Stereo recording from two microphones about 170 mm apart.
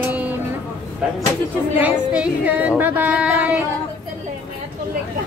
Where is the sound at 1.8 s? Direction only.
10° right (ahead or behind).